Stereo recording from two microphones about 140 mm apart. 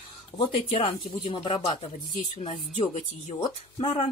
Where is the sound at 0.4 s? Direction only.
50° left (ahead or behind).